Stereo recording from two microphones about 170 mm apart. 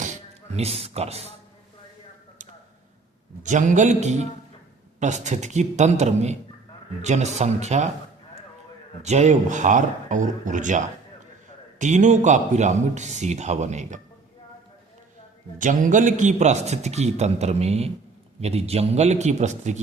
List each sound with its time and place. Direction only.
0.5 s a man's voice: 35° right (ahead or behind)
3.4 s a man's voice: 45° right (ahead or behind)
9.0 s a man's voice: 40° right (ahead or behind)
15.5 s a man's voice: 50° right (ahead or behind)